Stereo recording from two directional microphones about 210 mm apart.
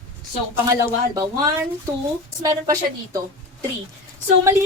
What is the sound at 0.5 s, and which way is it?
Speech, 10° right (ahead or behind).